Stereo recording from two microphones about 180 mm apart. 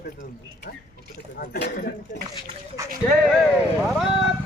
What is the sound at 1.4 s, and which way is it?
Speech, 60° left (ahead or behind).